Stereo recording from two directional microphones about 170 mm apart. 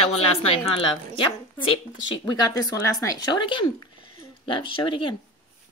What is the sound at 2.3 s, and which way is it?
Speech, 20° left (ahead or behind).